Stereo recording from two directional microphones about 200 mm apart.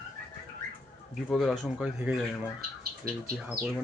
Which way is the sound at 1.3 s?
5° left (ahead or behind).